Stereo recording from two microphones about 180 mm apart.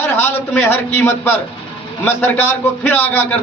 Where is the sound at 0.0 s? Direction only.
10° left (ahead or behind).